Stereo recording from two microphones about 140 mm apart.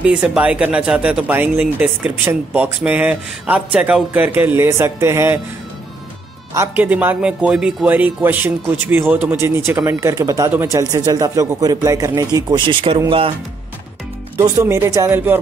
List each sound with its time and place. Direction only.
0.0 s speech: 10° right (ahead or behind)
6.5 s speech: 15° right (ahead or behind); by 13.0 s 35° right (ahead or behind)
14.3 s speech: 20° right (ahead or behind)